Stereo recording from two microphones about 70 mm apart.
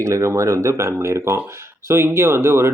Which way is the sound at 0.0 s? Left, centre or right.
Right.